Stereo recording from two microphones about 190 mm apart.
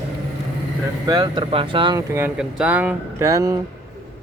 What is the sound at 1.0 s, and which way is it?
Speech, 20° right (ahead or behind).